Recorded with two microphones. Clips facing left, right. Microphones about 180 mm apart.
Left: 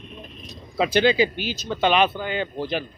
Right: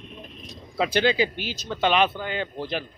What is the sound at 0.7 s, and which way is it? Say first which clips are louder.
Speech: left 3 dB; 15° left (ahead or behind).